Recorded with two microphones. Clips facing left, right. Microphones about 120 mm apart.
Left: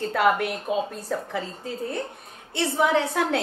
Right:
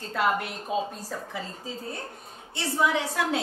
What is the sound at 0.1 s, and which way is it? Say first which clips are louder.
A woman's voice: left 3 dB; 60° left (ahead or behind).